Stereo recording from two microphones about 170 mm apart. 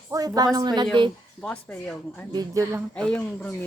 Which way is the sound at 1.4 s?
10° left (ahead or behind).